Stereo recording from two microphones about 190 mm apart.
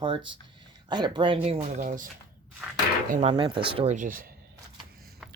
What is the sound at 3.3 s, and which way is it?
Speech, 25° right (ahead or behind).